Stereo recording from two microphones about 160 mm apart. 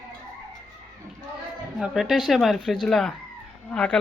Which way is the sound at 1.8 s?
Centre (ahead or behind).